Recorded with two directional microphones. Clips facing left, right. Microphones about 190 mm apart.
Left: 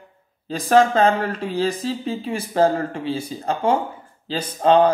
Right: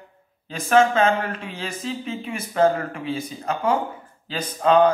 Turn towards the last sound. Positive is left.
turn(degrees=30)  # may be behind; listen again after turning